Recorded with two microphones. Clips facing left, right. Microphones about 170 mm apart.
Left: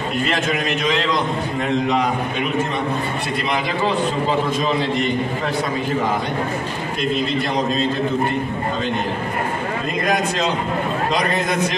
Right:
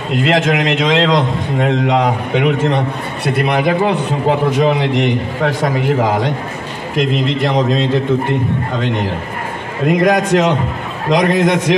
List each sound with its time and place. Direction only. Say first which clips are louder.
0.1 s a man's voice: right 9 dB; 90° right
3.3 s a man's voice: right 9 dB; 65° right (ahead or behind); by 8.0 s 90° right
9.8 s a man's voice: right 10 dB; 90° right